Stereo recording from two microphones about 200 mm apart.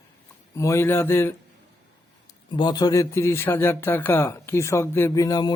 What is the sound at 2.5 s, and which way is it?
Speech, 20° left (ahead or behind).